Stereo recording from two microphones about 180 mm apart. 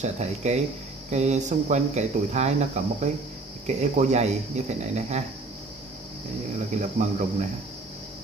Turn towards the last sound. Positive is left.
turn(degrees=-40)  # may be behind; listen again after turning